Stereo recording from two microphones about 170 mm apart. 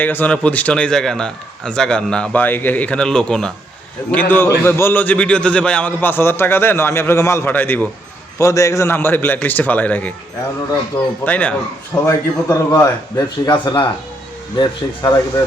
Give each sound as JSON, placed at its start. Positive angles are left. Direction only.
{"t": 0.0, "sound": "a man's voice", "side_deg": 10}